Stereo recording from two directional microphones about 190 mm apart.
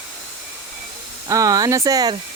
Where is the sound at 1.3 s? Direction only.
20° right (ahead or behind).